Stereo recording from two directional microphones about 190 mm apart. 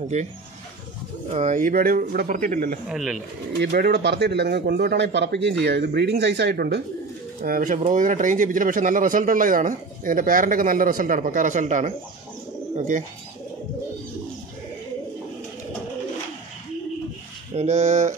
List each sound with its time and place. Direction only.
0.1 s speech: 35° right (ahead or behind)
1.3 s speech: 40° right (ahead or behind)
2.9 s speech: centre (ahead or behind)
3.5 s speech: 60° right (ahead or behind)
7.4 s speech: 45° right (ahead or behind)
17.6 s speech: 40° right (ahead or behind)